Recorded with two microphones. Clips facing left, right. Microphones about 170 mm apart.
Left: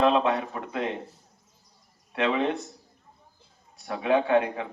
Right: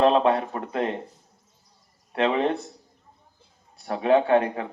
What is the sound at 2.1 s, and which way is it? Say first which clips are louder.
Speech: right 3 dB; 35° right (ahead or behind).